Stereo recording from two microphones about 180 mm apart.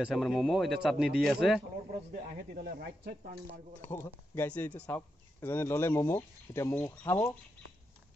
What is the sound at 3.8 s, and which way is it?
Speech, 10° left (ahead or behind).